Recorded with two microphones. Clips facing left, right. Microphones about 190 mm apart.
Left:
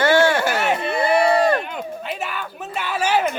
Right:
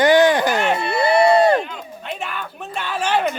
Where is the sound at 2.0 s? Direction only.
5° left (ahead or behind).